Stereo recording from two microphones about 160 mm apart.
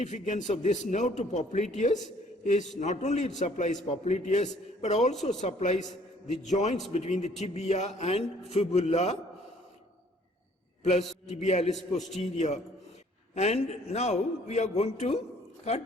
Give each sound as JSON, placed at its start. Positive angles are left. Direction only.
{"t": 0.0, "sound": "a man's voice", "side_deg": 50}
{"t": 11.3, "sound": "a man's voice", "side_deg": 45}